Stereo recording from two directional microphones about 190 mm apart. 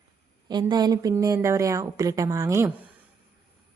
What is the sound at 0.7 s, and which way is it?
Speech, 20° right (ahead or behind).